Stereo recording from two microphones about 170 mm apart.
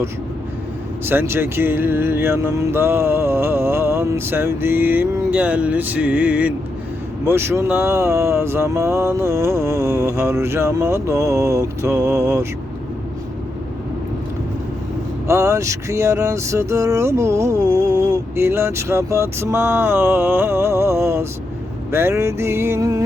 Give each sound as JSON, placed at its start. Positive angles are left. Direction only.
{"t": 1.0, "sound": "vehicle", "side_deg": -15}
{"t": 15.3, "sound": "vehicle", "side_deg": -15}